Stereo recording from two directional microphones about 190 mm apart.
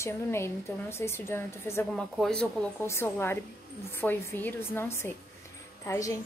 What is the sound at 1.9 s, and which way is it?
A woman's voice, 5° left (ahead or behind).